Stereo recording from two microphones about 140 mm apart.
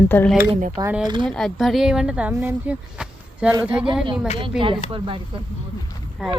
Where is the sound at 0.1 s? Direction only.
15° left (ahead or behind).